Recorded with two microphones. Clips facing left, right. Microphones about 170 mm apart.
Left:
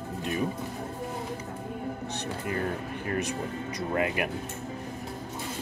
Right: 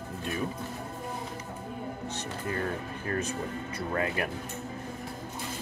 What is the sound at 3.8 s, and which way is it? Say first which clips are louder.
Speech: left 2 dB; 20° left (ahead or behind).